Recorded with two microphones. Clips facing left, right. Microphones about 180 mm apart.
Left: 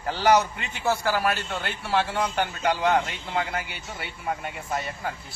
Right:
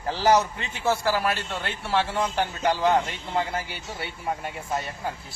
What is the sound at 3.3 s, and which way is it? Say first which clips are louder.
Speech: right 1 dB; 30° right (ahead or behind).